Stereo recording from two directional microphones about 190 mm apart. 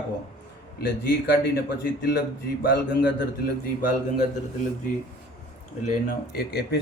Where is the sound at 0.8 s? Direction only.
55° left (ahead or behind).